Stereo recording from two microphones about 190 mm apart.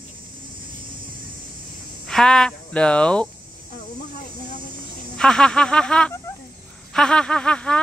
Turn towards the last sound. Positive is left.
turn(degrees=5)  # may be behind; listen again after turning